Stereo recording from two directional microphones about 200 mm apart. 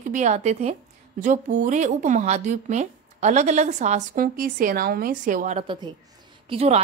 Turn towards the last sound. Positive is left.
turn(degrees=-30)  # may be behind; listen again after turning